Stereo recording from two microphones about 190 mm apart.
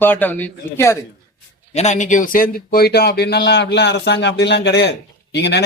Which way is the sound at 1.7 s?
35° left (ahead or behind).